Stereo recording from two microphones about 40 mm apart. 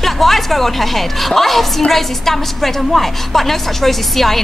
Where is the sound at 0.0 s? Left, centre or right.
Centre.